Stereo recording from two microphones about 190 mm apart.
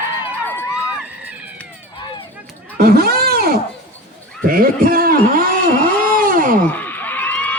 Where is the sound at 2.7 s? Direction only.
55° right (ahead or behind).